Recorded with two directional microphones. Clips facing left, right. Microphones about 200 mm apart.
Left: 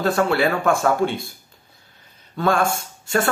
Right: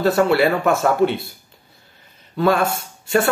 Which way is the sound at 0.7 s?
50° left (ahead or behind).